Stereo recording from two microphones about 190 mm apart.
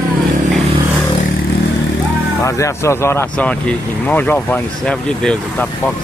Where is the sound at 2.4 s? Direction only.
15° left (ahead or behind).